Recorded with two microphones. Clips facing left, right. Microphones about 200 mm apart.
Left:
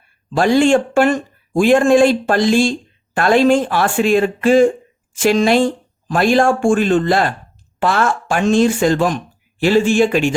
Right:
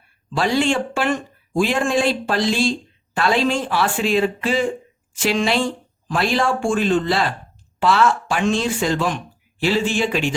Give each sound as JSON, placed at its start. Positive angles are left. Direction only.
{"t": 0.3, "sound": "speech", "side_deg": 50}